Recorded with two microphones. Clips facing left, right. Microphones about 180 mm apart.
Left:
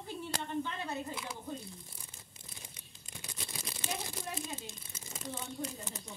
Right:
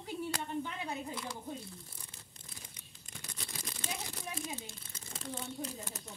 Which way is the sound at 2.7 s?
20° left (ahead or behind).